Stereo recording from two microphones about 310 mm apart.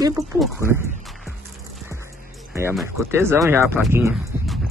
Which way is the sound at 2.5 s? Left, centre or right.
Centre.